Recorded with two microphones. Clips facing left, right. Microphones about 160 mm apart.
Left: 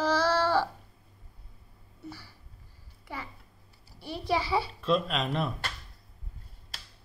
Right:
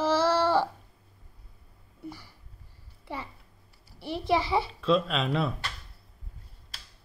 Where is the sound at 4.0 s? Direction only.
25° right (ahead or behind).